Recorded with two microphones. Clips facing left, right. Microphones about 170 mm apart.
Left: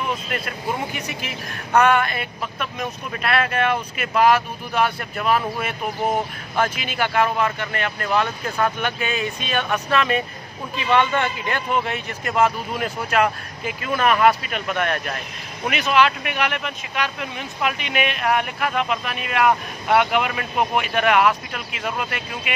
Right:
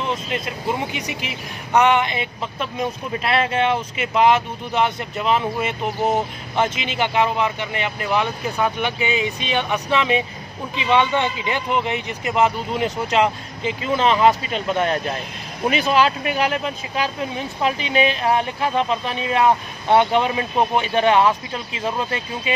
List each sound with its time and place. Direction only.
0.0 s speech: 20° right (ahead or behind)